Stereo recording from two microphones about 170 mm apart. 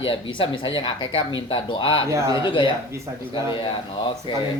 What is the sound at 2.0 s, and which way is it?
Speech, 15° right (ahead or behind).